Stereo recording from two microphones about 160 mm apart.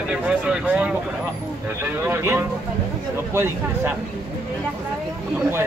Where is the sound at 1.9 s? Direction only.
15° right (ahead or behind).